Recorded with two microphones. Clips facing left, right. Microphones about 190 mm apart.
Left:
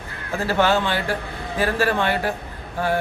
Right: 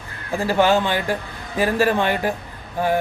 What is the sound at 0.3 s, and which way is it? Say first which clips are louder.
A man's voice: right 2 dB; 15° right (ahead or behind).